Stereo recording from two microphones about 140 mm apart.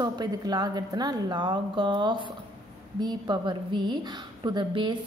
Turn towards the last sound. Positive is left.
turn(degrees=-35)  # may be behind; listen again after turning